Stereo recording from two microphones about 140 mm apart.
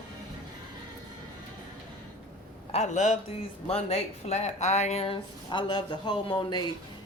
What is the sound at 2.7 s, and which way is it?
Speech, 55° left (ahead or behind).